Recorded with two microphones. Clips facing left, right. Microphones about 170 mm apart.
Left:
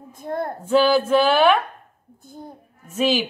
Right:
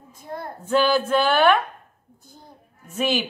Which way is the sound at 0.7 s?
5° left (ahead or behind).